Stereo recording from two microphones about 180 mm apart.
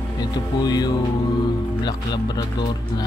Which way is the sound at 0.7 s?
20° left (ahead or behind).